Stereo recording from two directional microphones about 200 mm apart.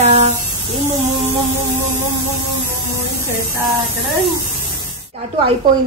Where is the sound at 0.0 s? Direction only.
35° right (ahead or behind).